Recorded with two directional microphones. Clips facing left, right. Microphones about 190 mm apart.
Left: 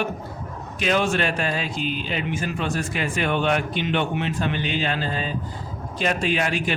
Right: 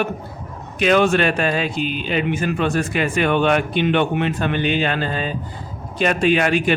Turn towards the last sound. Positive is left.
turn(degrees=-60)  # may be behind; listen again after turning